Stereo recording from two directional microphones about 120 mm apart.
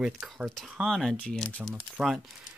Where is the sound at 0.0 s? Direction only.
10° right (ahead or behind).